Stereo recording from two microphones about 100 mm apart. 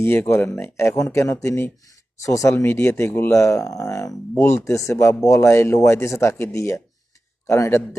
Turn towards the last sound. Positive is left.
turn(degrees=30)  # may be behind; listen again after turning